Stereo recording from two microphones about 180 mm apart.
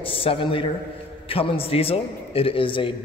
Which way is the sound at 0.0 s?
30° left (ahead or behind).